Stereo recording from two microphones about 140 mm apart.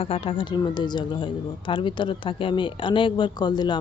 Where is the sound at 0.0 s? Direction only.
40° left (ahead or behind).